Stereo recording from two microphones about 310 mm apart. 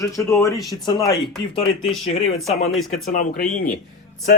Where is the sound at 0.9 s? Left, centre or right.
Centre.